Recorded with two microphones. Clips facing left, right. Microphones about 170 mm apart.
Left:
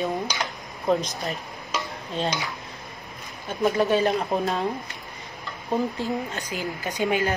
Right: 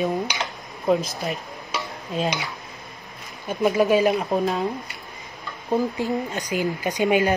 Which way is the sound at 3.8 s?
15° right (ahead or behind).